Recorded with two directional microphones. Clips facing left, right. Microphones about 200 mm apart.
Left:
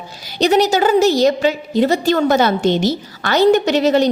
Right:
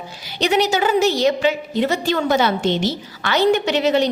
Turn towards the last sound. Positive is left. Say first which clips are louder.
# left 4 dB
turn(degrees=40)  # may be behind; listen again after turning